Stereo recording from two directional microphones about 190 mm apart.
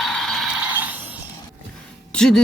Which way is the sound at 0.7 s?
10° right (ahead or behind).